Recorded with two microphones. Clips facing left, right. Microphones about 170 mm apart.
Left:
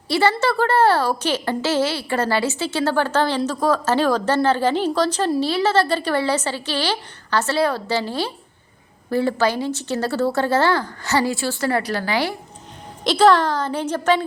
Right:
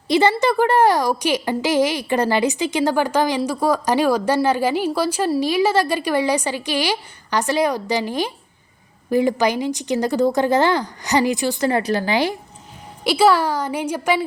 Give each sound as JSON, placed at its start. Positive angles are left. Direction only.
{"t": 0.1, "sound": "a woman's voice", "side_deg": -20}
{"t": 13.1, "sound": "a woman's voice", "side_deg": -10}